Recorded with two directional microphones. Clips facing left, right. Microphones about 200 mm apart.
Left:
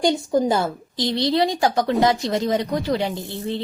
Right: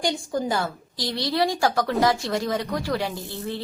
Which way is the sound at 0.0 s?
20° left (ahead or behind).